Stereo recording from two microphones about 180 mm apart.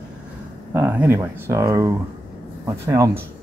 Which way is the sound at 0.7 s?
10° right (ahead or behind).